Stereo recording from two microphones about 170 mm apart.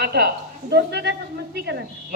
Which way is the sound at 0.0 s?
70° right (ahead or behind).